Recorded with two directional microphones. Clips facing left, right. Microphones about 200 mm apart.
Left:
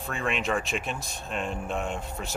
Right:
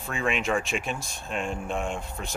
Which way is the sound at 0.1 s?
Centre (ahead or behind).